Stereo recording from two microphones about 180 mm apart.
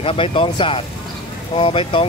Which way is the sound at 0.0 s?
30° left (ahead or behind).